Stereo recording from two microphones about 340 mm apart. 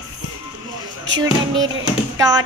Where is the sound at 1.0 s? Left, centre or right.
Right.